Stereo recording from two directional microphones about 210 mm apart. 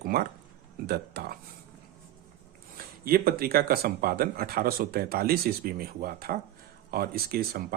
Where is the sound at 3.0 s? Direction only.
45° right (ahead or behind).